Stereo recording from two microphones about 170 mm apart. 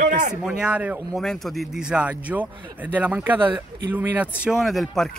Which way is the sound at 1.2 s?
Centre (ahead or behind).